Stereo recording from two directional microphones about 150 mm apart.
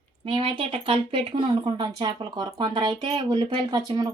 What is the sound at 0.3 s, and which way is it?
Speech, 35° right (ahead or behind).